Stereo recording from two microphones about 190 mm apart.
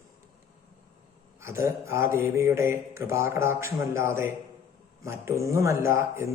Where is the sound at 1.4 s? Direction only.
15° right (ahead or behind).